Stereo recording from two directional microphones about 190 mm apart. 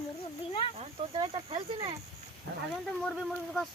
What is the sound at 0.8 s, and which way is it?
Speech, 30° right (ahead or behind).